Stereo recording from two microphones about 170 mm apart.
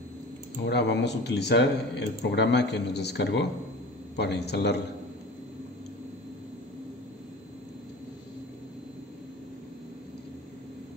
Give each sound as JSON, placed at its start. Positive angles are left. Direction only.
{"t": 0.6, "sound": "a man's voice", "side_deg": 90}